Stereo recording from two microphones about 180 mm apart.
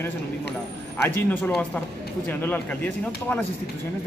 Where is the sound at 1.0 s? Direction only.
10° left (ahead or behind).